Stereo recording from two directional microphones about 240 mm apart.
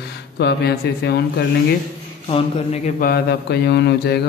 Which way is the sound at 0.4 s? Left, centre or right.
Left.